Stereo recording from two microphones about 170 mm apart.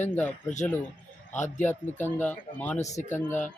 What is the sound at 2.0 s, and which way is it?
Speech, 10° left (ahead or behind).